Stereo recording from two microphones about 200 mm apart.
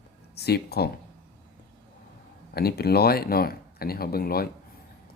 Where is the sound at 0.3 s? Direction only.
55° left (ahead or behind).